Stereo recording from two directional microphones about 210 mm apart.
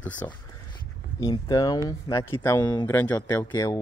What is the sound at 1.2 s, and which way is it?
Speech, 20° left (ahead or behind).